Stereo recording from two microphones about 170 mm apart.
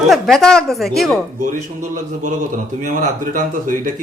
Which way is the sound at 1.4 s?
50° right (ahead or behind).